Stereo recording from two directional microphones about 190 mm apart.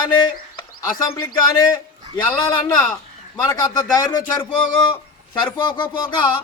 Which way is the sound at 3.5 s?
20° left (ahead or behind).